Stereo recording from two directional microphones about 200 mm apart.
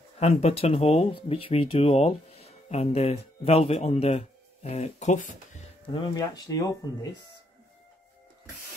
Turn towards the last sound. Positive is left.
turn(degrees=20)  # may be behind; listen again after turning